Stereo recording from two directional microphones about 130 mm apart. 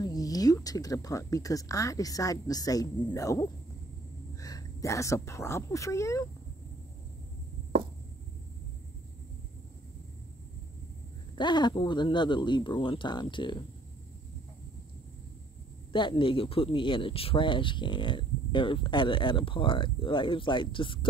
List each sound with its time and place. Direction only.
0.0 s a woman's voice: 30° left (ahead or behind)
11.3 s speech: 35° left (ahead or behind)
15.9 s speech: 40° left (ahead or behind)